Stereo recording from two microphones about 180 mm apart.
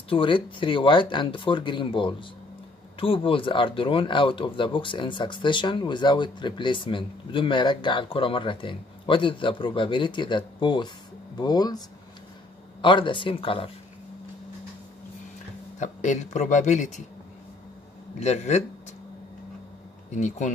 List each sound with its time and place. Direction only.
0.1 s speech: 30° left (ahead or behind)
12.8 s speech: 25° left (ahead or behind)
15.8 s speech: 40° left (ahead or behind)
18.2 s speech: 40° left (ahead or behind)
20.1 s speech: 40° left (ahead or behind)